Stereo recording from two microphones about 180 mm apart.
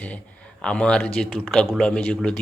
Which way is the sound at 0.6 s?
5° left (ahead or behind).